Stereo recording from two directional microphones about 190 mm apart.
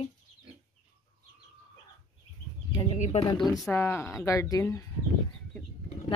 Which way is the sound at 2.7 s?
35° left (ahead or behind).